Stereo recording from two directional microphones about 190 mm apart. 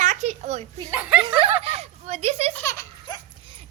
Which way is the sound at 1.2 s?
25° right (ahead or behind).